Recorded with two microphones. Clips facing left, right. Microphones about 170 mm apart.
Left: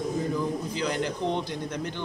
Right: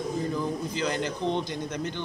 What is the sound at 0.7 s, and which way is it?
Speech, centre (ahead or behind).